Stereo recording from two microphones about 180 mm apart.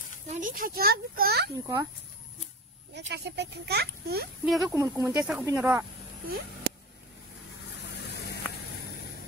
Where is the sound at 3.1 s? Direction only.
70° right (ahead or behind).